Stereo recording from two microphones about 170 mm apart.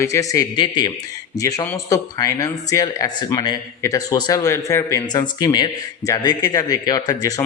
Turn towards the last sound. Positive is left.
turn(degrees=20)  # may be behind; listen again after turning